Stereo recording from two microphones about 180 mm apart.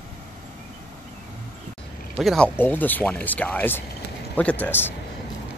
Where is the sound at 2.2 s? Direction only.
Centre (ahead or behind).